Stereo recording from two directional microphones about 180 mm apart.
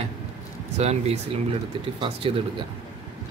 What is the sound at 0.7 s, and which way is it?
Speech, 35° right (ahead or behind).